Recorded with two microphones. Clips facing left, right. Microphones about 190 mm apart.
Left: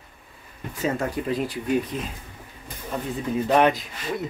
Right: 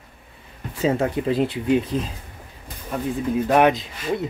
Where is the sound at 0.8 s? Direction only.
25° right (ahead or behind).